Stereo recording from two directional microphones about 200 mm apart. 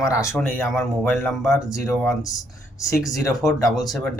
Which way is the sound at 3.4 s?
Centre (ahead or behind).